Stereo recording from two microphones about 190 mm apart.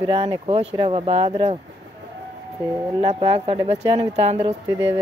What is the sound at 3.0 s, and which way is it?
Speech, 35° right (ahead or behind).